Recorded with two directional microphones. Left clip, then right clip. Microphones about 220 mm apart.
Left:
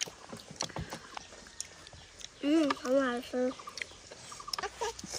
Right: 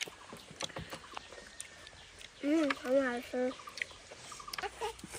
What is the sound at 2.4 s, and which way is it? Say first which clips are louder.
Speech: left 3 dB; 20° left (ahead or behind).